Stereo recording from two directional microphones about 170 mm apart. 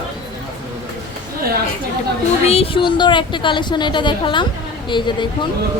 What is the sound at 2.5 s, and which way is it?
A woman's voice, 35° left (ahead or behind).